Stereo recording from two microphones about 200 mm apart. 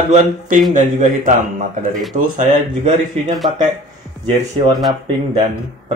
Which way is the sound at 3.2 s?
30° right (ahead or behind).